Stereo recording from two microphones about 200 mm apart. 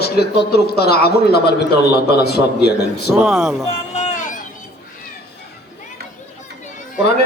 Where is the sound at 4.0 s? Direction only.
35° left (ahead or behind).